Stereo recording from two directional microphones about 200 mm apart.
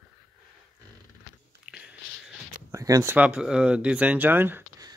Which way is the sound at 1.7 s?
5° right (ahead or behind).